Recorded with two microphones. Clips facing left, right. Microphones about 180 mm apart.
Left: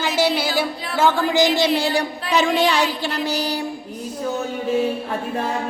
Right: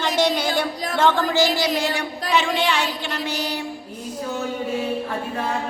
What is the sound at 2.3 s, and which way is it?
Child singing, 40° left (ahead or behind).